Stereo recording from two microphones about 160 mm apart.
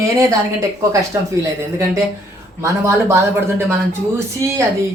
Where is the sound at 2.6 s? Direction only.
15° right (ahead or behind).